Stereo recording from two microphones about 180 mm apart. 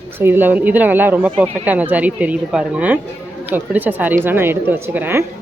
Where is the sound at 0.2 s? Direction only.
10° right (ahead or behind).